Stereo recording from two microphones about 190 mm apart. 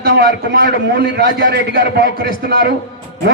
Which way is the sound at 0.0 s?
55° right (ahead or behind).